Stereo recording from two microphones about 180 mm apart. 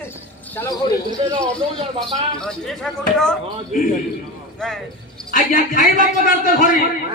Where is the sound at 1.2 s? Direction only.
30° right (ahead or behind).